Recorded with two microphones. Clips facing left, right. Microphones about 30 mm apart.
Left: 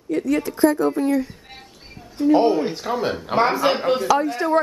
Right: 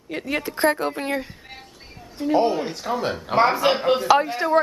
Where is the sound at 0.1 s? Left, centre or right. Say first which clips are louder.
Left 6 dB; right.